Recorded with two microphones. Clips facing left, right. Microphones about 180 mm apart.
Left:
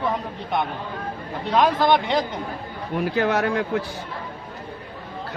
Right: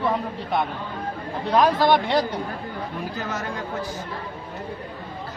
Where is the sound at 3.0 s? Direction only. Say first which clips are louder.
Left 12 dB; 65° left (ahead or behind).